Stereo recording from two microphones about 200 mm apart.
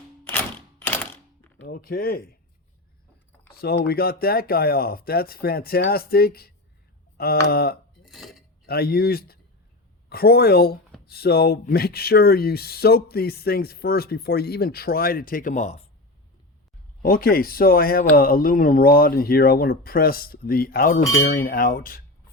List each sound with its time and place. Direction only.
0.8 s a sound: 10° left (ahead or behind)
1.6 s speech: 45° left (ahead or behind)
3.5 s speech: 50° left (ahead or behind)
8.0 s dishes: centre (ahead or behind)
8.6 s speech: 50° left (ahead or behind)
17.0 s speech: 50° left (ahead or behind)